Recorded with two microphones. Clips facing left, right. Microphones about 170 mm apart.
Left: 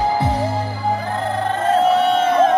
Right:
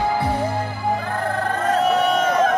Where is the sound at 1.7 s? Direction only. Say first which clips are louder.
Left 3 dB; 30° left (ahead or behind).